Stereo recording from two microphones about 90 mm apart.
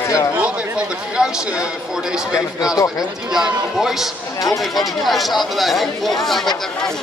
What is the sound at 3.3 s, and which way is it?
Speech, 5° right (ahead or behind).